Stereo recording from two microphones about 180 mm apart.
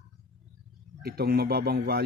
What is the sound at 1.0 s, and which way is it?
Speech, 60° right (ahead or behind).